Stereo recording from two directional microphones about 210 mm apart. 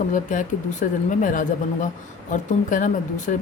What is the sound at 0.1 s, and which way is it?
Speech, 35° left (ahead or behind).